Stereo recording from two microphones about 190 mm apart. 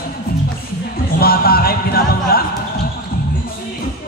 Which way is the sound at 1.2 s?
55° left (ahead or behind).